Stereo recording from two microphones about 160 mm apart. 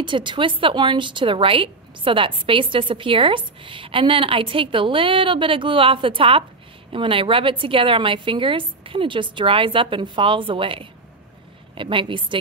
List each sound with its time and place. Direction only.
0.0 s speech: 30° right (ahead or behind)